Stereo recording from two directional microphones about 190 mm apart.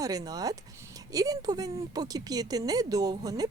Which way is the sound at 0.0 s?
20° right (ahead or behind).